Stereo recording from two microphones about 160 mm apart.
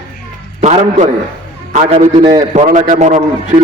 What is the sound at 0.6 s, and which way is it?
A man's voice, 45° right (ahead or behind).